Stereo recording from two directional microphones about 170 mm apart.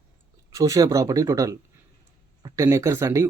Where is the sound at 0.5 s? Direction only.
20° right (ahead or behind).